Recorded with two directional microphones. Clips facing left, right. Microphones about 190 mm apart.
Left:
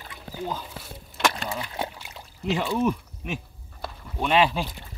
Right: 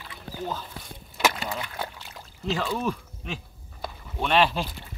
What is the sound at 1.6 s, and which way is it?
Pour, 20° left (ahead or behind).